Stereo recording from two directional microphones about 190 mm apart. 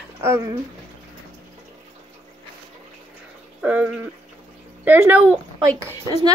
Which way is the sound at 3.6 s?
10° right (ahead or behind).